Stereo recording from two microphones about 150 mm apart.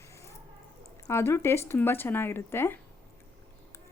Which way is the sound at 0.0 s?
20° left (ahead or behind).